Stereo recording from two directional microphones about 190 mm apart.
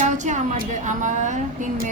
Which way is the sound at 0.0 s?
40° right (ahead or behind).